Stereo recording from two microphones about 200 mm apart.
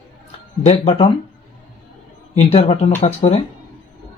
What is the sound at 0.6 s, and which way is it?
Speech, 30° left (ahead or behind).